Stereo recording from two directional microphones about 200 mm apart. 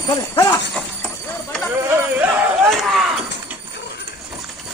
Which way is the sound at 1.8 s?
10° right (ahead or behind).